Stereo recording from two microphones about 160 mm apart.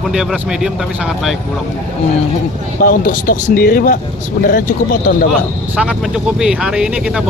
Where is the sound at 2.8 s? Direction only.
60° left (ahead or behind).